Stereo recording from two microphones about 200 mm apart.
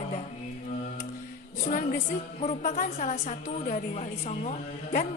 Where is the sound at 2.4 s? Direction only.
35° left (ahead or behind).